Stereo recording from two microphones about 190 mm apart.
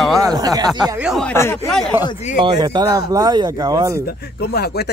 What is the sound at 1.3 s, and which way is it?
Speech, 10° left (ahead or behind).